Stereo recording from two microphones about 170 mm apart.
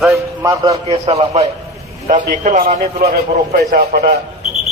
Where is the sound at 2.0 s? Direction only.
50° right (ahead or behind).